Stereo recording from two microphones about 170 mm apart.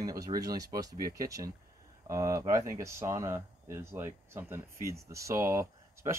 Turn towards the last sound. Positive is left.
turn(degrees=-15)  # may be behind; listen again after turning